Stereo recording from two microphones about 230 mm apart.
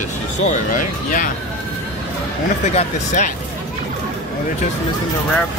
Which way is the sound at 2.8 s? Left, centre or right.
Left.